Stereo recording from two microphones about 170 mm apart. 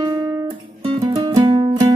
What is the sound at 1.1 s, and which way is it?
Music, 25° right (ahead or behind).